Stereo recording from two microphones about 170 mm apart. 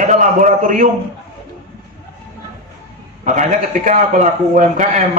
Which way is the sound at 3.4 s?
45° right (ahead or behind).